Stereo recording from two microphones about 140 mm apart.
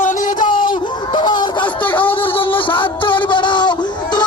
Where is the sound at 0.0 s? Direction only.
65° left (ahead or behind).